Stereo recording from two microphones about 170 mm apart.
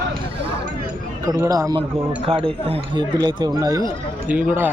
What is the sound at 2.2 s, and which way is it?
A man's voice, 35° right (ahead or behind).